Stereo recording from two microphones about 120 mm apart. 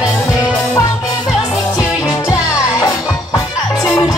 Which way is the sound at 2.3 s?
30° left (ahead or behind).